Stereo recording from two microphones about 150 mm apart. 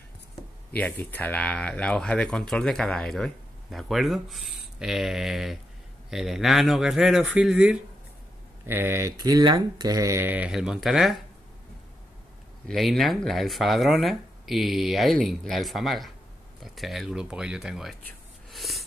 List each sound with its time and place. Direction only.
0.7 s speech: 10° left (ahead or behind)
12.6 s speech: centre (ahead or behind)
18.5 s a sound: centre (ahead or behind)